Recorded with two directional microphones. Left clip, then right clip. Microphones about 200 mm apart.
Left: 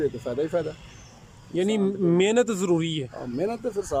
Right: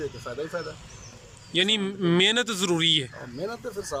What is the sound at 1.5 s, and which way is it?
Speech, 20° left (ahead or behind).